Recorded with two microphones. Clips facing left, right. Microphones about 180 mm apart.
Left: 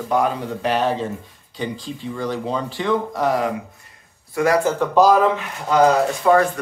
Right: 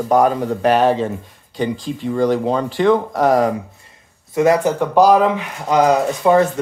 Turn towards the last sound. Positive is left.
turn(degrees=-20)  # may be behind; listen again after turning